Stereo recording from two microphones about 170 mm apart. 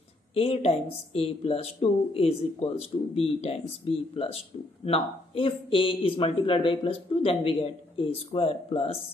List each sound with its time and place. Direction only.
0.3 s speech: 35° left (ahead or behind)